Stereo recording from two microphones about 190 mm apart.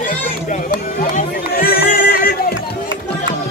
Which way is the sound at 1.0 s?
45° left (ahead or behind).